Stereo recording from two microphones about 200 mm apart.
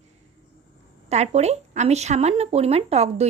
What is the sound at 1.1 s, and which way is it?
Speech, 35° right (ahead or behind).